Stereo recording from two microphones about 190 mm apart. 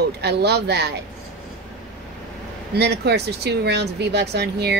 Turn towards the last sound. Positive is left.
turn(degrees=-60)  # may be behind; listen again after turning